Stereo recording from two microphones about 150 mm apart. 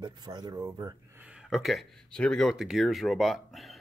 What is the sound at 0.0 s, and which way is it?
Speech, 25° right (ahead or behind).